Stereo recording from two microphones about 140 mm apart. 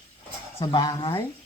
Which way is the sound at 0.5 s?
30° left (ahead or behind).